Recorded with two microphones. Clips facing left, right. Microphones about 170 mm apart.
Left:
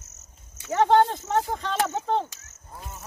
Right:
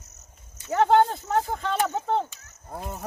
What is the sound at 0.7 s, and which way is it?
Speech, centre (ahead or behind).